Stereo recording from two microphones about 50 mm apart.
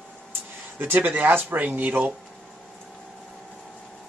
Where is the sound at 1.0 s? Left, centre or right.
Right.